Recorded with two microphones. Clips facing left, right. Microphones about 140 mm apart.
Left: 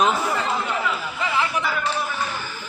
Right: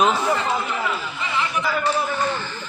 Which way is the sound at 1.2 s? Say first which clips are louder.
Left 2 dB; 35° left (ahead or behind).